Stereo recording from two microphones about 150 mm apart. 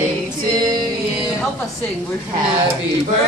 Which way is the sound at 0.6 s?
30° right (ahead or behind).